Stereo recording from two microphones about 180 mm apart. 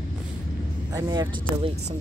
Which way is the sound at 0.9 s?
20° right (ahead or behind).